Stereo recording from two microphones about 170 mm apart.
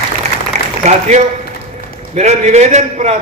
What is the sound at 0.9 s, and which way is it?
A man's voice, 45° right (ahead or behind).